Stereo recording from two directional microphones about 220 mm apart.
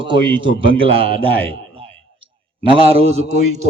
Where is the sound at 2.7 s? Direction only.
25° right (ahead or behind).